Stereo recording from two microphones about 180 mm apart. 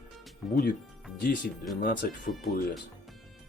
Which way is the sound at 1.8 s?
60° left (ahead or behind).